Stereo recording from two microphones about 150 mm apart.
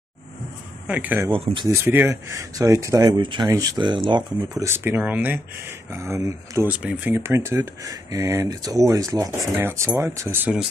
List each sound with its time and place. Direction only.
0.8 s speech: 10° right (ahead or behind)
1.3 s speech: 35° right (ahead or behind)
1.7 s speech: 15° right (ahead or behind); by 4.6 s 30° right (ahead or behind)
4.6 s speech: 15° right (ahead or behind)
6.8 s speech: 5° right (ahead or behind)